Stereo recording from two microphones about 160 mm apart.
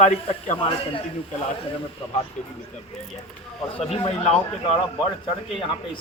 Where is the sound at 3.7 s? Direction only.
35° left (ahead or behind).